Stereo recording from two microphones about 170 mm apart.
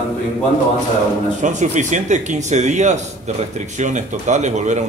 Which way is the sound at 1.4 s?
45° right (ahead or behind).